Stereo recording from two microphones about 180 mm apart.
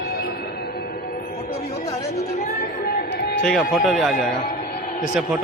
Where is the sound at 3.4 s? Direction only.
Centre (ahead or behind).